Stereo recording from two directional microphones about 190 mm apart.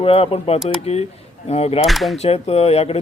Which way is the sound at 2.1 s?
30° left (ahead or behind).